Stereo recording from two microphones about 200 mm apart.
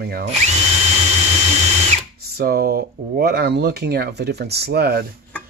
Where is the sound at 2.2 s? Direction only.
50° right (ahead or behind).